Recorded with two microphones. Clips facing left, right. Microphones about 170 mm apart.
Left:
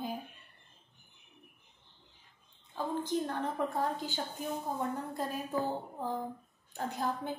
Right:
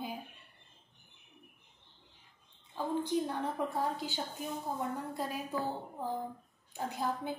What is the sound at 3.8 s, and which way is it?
Speech, 45° left (ahead or behind).